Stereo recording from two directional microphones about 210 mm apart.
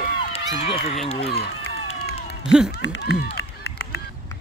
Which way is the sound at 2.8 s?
60° left (ahead or behind).